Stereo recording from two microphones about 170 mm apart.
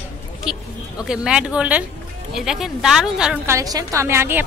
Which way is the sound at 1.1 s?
5° right (ahead or behind).